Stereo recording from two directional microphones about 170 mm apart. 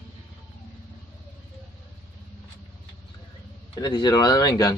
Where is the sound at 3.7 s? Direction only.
25° left (ahead or behind).